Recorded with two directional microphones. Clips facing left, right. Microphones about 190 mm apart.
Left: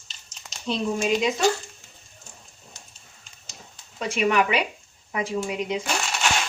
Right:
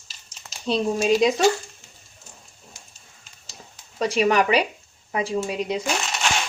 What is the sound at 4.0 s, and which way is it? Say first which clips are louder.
Speech: right 3 dB; 35° right (ahead or behind).